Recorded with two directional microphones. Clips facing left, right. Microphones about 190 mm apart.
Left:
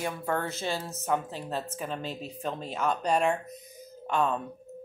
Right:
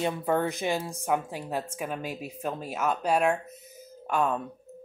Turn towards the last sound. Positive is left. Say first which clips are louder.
# right 1 dB
turn(degrees=-10)  # may be behind; listen again after turning